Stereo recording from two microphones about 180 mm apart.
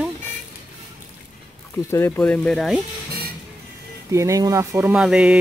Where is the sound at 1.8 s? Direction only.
15° left (ahead or behind).